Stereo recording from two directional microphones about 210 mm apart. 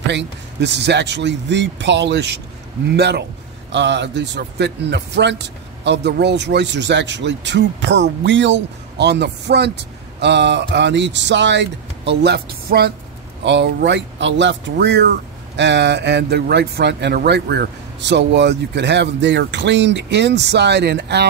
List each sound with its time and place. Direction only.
0.1 s a man's voice: 55° right (ahead or behind)